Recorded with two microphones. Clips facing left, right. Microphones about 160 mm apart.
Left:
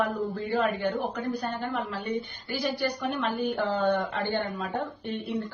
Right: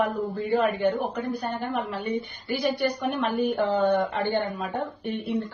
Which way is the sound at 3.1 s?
15° right (ahead or behind).